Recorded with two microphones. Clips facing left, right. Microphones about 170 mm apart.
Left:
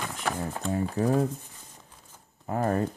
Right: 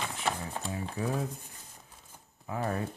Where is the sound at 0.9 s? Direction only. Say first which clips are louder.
Left 8 dB; 50° left (ahead or behind).